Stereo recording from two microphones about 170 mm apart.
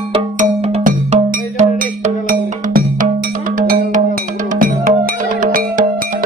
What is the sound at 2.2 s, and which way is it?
Music, 55° right (ahead or behind).